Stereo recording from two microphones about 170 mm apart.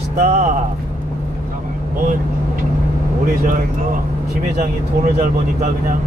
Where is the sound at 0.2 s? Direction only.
40° right (ahead or behind).